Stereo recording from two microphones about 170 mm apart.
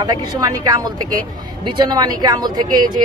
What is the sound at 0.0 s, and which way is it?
Speech, 25° right (ahead or behind).